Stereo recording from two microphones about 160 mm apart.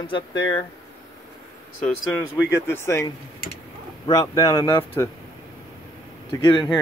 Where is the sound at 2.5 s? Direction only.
15° left (ahead or behind).